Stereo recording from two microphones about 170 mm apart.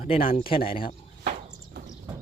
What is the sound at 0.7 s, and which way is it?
Speech, 60° left (ahead or behind).